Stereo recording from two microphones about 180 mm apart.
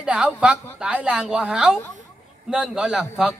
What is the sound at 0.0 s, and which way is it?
A man's voice, 5° right (ahead or behind).